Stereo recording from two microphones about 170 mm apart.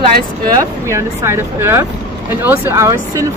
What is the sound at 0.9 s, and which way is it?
Speech, 15° right (ahead or behind).